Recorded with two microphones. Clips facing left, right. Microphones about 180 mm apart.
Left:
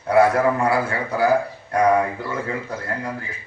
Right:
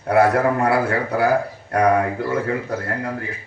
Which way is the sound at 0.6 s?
60° right (ahead or behind).